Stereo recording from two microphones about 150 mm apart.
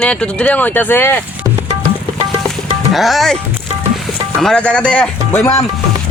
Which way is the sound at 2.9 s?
Centre (ahead or behind).